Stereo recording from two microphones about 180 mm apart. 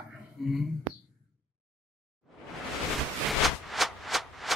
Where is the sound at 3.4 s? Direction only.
Centre (ahead or behind).